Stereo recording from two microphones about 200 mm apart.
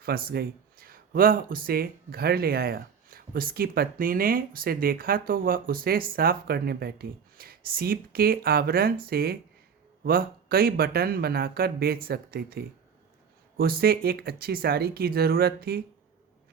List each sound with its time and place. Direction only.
0.0 s speech: 50° right (ahead or behind)